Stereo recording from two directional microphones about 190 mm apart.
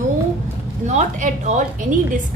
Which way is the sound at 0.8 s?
40° right (ahead or behind).